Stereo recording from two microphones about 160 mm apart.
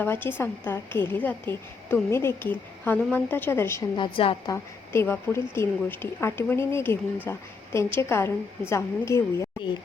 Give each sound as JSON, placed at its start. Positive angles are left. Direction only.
{"t": 0.0, "sound": "a woman's voice", "side_deg": 15}
{"t": 3.9, "sound": "a woman's voice", "side_deg": 30}
{"t": 4.5, "sound": "a woman's voice", "side_deg": 15}